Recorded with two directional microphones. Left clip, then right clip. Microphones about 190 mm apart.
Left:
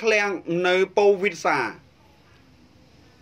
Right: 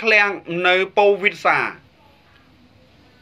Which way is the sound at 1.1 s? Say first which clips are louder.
Right 5 dB; 55° left (ahead or behind).